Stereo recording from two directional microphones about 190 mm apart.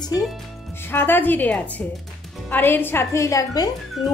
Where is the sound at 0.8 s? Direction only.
10° left (ahead or behind).